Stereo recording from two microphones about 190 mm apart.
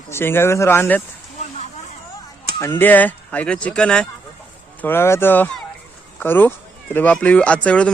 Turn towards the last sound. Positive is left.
turn(degrees=5)  # may be behind; listen again after turning